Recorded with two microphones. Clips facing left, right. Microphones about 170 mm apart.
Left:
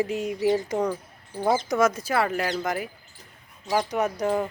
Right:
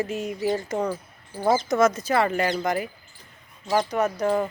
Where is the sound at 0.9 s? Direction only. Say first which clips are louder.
Even; 10° right (ahead or behind).